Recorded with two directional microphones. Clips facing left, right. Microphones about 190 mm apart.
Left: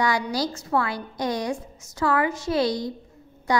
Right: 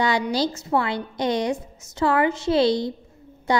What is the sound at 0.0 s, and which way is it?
A woman's voice, 25° right (ahead or behind).